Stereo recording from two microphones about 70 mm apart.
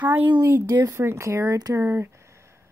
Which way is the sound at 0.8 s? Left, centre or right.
Right.